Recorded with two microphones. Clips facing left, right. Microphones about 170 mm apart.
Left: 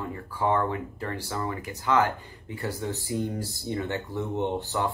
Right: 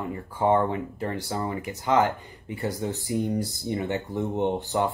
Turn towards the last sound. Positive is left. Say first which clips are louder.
# right 3 dB
turn(degrees=-20)  # may be behind; listen again after turning